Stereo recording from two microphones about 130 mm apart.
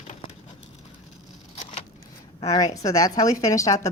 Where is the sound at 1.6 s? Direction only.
50° left (ahead or behind).